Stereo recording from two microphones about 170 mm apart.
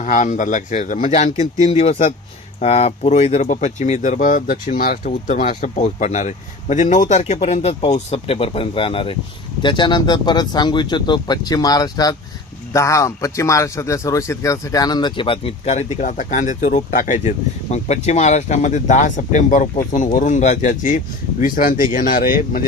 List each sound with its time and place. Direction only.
0.0 s speech: 45° left (ahead or behind)